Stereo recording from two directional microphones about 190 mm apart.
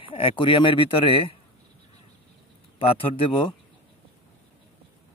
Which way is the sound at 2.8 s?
30° left (ahead or behind).